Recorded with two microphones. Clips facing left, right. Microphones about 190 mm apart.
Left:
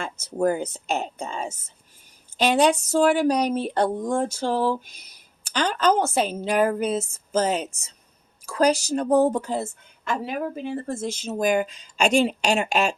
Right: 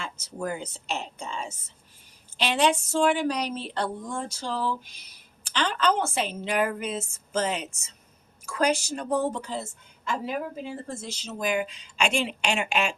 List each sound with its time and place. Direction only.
0.3 s a woman's voice: 50° left (ahead or behind)
5.5 s a woman's voice: 40° left (ahead or behind)